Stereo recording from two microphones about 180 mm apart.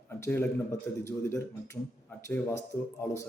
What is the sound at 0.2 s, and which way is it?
Speech, 15° left (ahead or behind).